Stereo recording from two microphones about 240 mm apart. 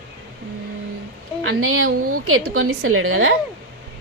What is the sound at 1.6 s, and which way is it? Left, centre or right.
A woman's voice, right.